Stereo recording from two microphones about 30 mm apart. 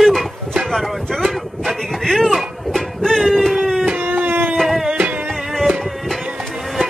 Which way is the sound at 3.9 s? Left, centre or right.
Right.